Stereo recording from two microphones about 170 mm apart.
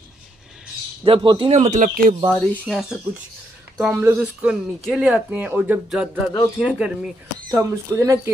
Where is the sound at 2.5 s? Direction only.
Centre (ahead or behind).